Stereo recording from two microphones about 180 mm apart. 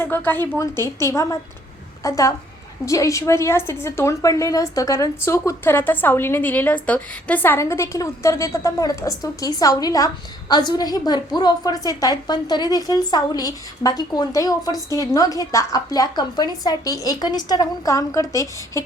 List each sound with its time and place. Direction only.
0.0 s a woman's voice: 10° left (ahead or behind)